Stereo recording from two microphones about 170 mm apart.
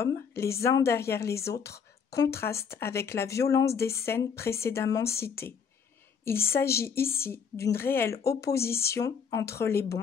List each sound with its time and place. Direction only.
0.0 s speech: 15° left (ahead or behind)